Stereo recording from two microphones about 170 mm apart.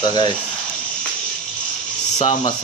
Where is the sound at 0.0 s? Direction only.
25° left (ahead or behind).